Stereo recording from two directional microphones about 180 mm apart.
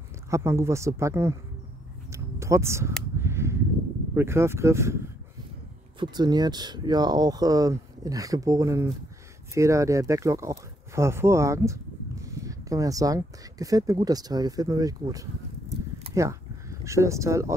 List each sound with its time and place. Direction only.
0.3 s speech: 15° right (ahead or behind)
2.1 s a sound: 15° right (ahead or behind)
4.1 s speech: 15° right (ahead or behind)